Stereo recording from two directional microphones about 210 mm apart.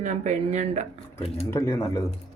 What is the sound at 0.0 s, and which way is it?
Speech, 35° right (ahead or behind).